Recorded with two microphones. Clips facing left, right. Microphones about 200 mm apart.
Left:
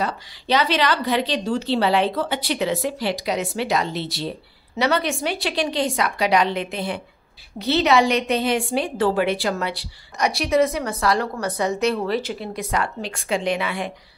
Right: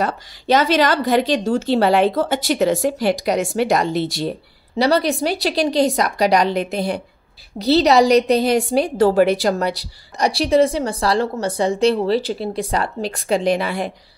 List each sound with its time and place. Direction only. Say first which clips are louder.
0.0 s speech: right 4 dB; 45° right (ahead or behind)
4.7 s a woman's voice: right 5 dB; 35° right (ahead or behind)